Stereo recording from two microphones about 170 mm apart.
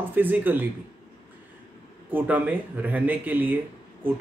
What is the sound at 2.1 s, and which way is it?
Speech, 10° right (ahead or behind).